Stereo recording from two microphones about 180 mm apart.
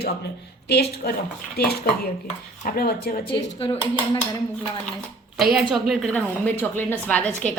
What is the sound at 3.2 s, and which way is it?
Speech, 30° left (ahead or behind).